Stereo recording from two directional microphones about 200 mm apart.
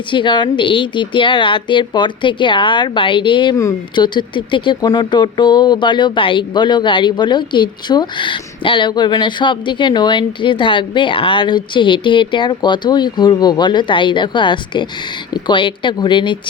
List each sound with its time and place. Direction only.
0.1 s a woman's voice: 25° left (ahead or behind)